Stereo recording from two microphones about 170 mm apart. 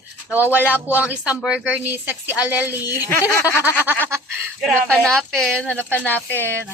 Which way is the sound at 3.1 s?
15° left (ahead or behind).